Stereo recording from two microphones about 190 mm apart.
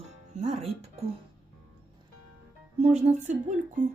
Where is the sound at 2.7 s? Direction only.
35° right (ahead or behind).